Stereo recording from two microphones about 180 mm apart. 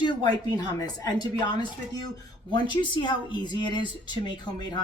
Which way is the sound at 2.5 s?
25° left (ahead or behind).